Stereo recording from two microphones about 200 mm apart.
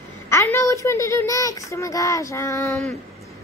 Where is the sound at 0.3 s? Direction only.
15° left (ahead or behind).